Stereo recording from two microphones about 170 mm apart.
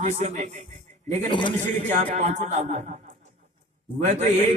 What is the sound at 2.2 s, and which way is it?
Speech, 45° right (ahead or behind).